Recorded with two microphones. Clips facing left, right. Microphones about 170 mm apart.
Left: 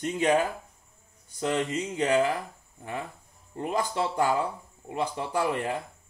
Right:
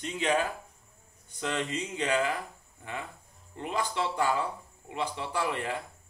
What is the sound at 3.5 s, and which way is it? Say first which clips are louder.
Speech: left 3 dB; 40° left (ahead or behind).